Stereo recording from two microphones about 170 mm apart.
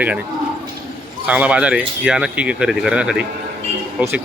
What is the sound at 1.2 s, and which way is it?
Speech, 10° right (ahead or behind).